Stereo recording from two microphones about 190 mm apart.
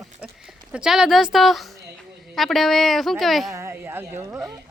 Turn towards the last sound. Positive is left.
turn(degrees=-10)  # may be behind; listen again after turning